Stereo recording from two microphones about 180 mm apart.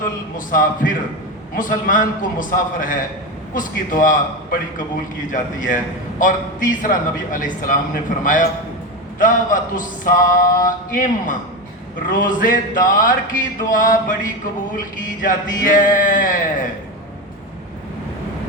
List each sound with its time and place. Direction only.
0.3 s a man's voice: 50° left (ahead or behind)
5.3 s a man's voice: 45° left (ahead or behind)
15.2 s a man's voice: 50° left (ahead or behind)